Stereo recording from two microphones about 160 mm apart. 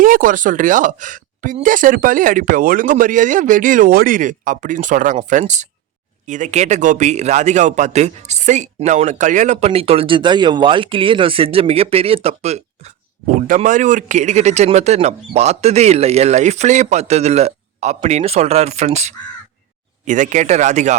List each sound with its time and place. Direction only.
0.0 s a man's voice: 60° right (ahead or behind); by 12.9 s 40° right (ahead or behind)
13.6 s a man's voice: 50° right (ahead or behind)